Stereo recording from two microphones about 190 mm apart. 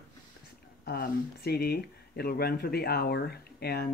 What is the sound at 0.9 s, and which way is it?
Speech, 55° left (ahead or behind).